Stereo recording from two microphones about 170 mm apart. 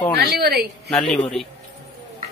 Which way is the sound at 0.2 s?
65° right (ahead or behind).